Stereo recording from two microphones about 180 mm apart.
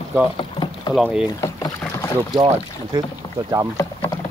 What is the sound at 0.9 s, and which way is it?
Speech, 5° right (ahead or behind).